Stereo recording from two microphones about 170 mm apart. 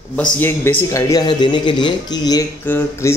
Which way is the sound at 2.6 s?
10° left (ahead or behind).